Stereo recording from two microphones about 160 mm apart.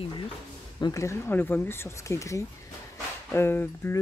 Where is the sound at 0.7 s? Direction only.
20° left (ahead or behind).